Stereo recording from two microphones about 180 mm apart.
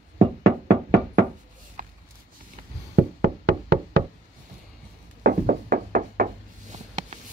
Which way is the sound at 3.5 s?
65° right (ahead or behind).